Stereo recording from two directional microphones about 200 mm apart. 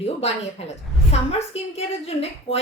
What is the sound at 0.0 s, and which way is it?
A woman's voice, 30° left (ahead or behind).